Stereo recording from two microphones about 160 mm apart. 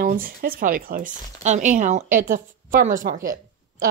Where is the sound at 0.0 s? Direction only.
65° right (ahead or behind).